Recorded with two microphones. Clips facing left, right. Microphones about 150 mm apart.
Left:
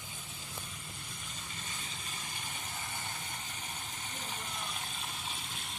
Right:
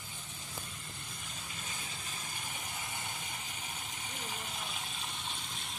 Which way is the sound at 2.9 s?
10° right (ahead or behind).